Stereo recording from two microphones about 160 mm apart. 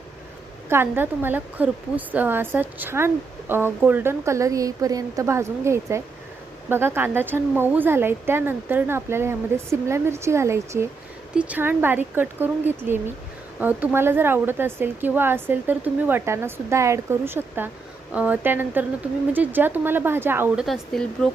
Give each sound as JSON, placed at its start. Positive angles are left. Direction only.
{"t": 0.7, "sound": "a woman's voice", "side_deg": -15}
{"t": 20.7, "sound": "speech", "side_deg": 0}